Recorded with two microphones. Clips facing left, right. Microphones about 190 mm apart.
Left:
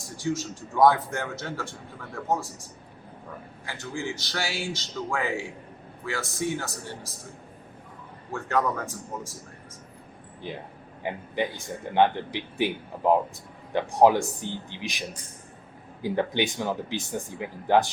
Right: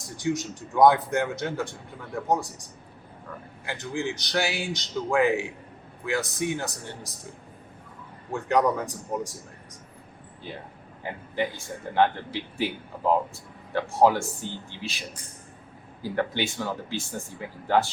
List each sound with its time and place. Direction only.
0.2 s a man's voice: 15° right (ahead or behind)
3.7 s a man's voice: 20° right (ahead or behind)
8.3 s a man's voice: 15° right (ahead or behind)
11.0 s speech: 15° left (ahead or behind)